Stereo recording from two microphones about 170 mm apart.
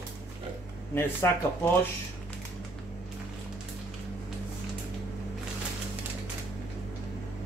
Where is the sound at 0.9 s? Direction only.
15° left (ahead or behind).